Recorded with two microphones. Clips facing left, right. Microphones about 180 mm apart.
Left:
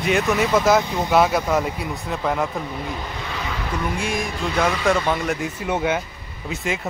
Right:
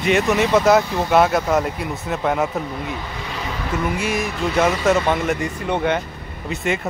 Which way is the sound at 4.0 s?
5° right (ahead or behind).